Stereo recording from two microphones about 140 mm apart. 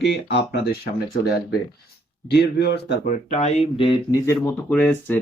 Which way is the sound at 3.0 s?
55° left (ahead or behind).